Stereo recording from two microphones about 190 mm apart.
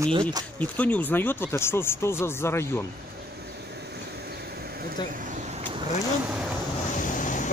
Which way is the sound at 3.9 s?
55° right (ahead or behind).